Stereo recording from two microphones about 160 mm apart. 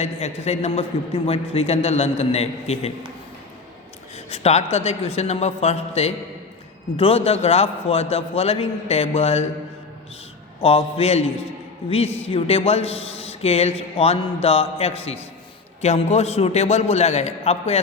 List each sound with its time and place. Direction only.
0.0 s a man's voice: 40° left (ahead or behind)
4.3 s a man's voice: 40° left (ahead or behind)
10.6 s a man's voice: 35° left (ahead or behind)